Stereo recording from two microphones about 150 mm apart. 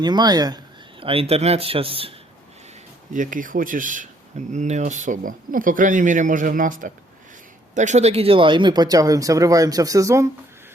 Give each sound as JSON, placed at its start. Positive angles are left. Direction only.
{"t": 0.0, "sound": "speech", "side_deg": -30}
{"t": 3.1, "sound": "speech", "side_deg": -60}
{"t": 7.8, "sound": "speech", "side_deg": -50}